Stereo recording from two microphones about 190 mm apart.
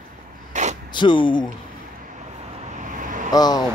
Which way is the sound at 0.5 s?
40° right (ahead or behind).